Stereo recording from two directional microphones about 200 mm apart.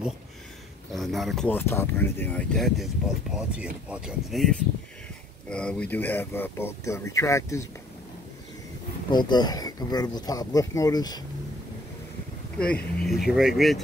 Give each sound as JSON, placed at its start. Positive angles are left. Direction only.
{"t": 0.9, "sound": "speech", "side_deg": 0}
{"t": 9.1, "sound": "speech", "side_deg": 20}
{"t": 12.5, "sound": "speech", "side_deg": 5}